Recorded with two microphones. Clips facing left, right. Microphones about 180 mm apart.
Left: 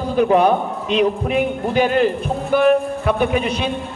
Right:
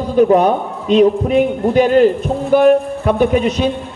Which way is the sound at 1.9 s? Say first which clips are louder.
Right 6 dB; 40° right (ahead or behind).